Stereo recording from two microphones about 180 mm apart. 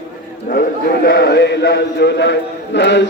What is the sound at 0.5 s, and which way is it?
Speech, 60° left (ahead or behind).